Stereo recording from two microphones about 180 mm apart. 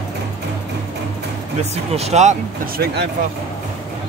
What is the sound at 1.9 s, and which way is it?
Speech, 35° right (ahead or behind).